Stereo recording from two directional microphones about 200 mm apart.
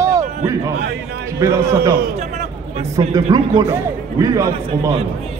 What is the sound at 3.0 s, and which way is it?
A man's voice, 20° right (ahead or behind).